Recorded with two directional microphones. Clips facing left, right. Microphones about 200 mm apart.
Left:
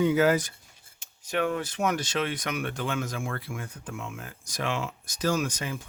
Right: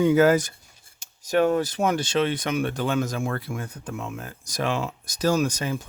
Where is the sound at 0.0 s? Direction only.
45° right (ahead or behind).